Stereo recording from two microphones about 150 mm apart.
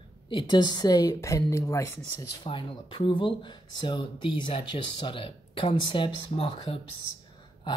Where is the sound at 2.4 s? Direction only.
35° left (ahead or behind).